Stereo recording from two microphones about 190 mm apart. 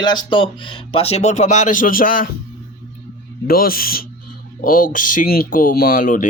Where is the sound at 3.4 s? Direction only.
50° left (ahead or behind).